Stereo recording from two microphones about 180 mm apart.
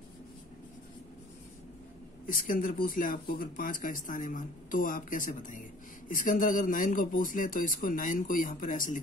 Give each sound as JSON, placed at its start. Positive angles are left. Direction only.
{"t": 2.2, "sound": "speech", "side_deg": 50}